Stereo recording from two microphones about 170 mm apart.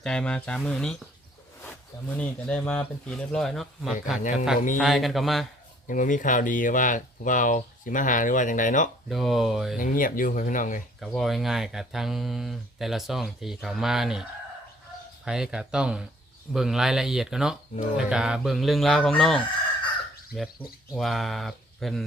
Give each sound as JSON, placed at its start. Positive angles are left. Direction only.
{"t": 0.0, "sound": "speech", "side_deg": 5}
{"t": 4.2, "sound": "speech", "side_deg": 45}
{"t": 4.8, "sound": "speech", "side_deg": 0}
{"t": 5.9, "sound": "speech", "side_deg": 50}
{"t": 9.0, "sound": "speech", "side_deg": 0}
{"t": 9.7, "sound": "speech", "side_deg": 55}
{"t": 11.0, "sound": "speech", "side_deg": 0}